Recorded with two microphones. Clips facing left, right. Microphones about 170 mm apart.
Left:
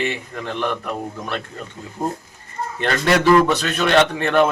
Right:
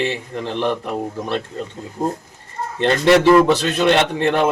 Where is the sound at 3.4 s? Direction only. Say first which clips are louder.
Right 4 dB; 25° right (ahead or behind).